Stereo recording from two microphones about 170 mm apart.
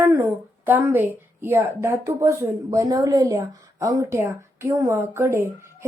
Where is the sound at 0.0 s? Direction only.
15° right (ahead or behind).